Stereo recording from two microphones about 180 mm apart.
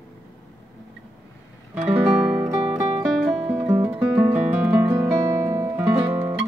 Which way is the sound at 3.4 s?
10° right (ahead or behind).